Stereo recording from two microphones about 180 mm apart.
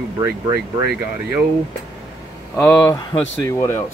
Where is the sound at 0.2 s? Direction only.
15° right (ahead or behind).